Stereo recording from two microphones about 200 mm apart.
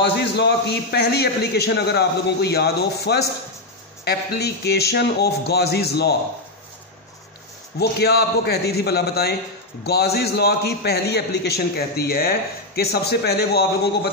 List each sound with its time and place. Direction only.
0.0 s a man's voice: 55° left (ahead or behind)
7.8 s a man's voice: 50° left (ahead or behind)